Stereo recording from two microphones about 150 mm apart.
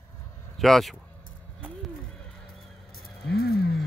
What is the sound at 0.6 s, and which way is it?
Speech, centre (ahead or behind).